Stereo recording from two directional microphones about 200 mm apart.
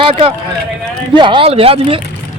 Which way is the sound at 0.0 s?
30° right (ahead or behind).